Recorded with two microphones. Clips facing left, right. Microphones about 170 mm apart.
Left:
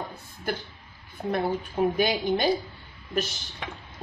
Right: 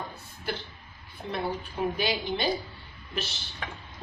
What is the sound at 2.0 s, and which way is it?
Speech, 50° left (ahead or behind).